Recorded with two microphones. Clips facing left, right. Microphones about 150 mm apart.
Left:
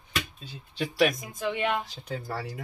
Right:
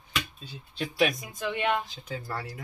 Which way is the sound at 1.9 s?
70° left (ahead or behind).